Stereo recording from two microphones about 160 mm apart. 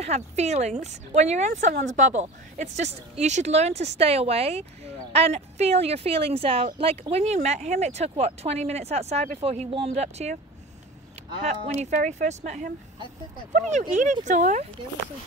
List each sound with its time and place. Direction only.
0.0 s speech: 45° right (ahead or behind)
11.4 s speech: 45° right (ahead or behind)